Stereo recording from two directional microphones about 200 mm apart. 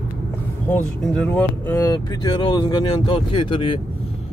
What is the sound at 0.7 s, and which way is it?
Speech, 5° left (ahead or behind).